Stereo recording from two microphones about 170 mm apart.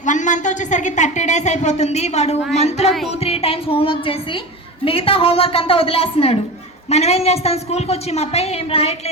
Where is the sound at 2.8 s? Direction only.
Centre (ahead or behind).